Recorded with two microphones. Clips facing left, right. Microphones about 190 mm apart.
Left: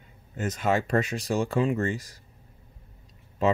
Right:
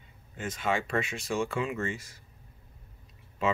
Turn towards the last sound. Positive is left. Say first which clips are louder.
# left 5 dB
turn(degrees=40)  # may be behind; listen again after turning